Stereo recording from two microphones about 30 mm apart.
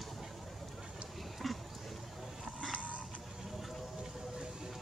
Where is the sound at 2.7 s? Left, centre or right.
Left.